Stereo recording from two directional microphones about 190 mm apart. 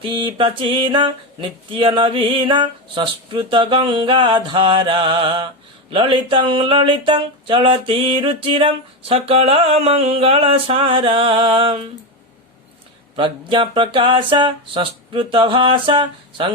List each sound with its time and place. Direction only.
0.0 s speech: 25° right (ahead or behind)
13.1 s speech: 25° right (ahead or behind)